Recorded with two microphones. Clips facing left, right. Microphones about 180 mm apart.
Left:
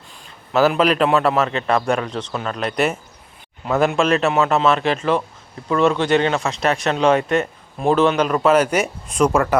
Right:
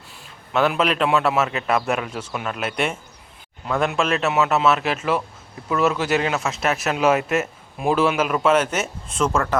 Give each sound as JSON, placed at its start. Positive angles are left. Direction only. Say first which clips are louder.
{"t": 0.5, "sound": "speech", "louder": "left 4 dB", "side_deg": 0}
{"t": 8.5, "sound": "speech", "louder": "left 4 dB", "side_deg": 10}